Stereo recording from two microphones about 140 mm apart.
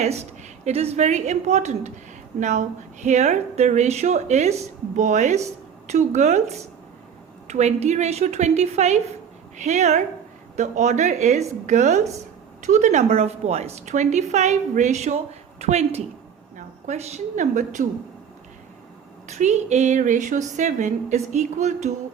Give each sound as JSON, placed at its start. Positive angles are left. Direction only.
{"t": 0.0, "sound": "a woman's voice", "side_deg": -50}
{"t": 19.3, "sound": "a woman's voice", "side_deg": -55}